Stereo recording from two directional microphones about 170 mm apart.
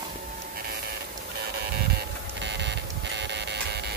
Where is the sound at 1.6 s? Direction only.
70° right (ahead or behind).